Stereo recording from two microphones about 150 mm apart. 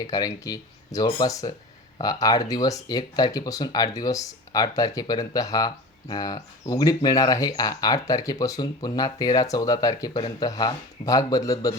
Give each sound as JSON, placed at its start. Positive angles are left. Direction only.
{"t": 0.0, "sound": "speech", "side_deg": 25}